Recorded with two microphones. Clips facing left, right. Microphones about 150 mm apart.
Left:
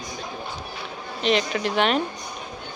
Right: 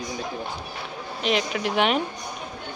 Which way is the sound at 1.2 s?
5° right (ahead or behind).